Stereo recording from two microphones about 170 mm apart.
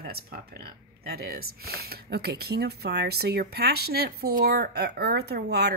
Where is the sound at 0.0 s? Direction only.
65° right (ahead or behind).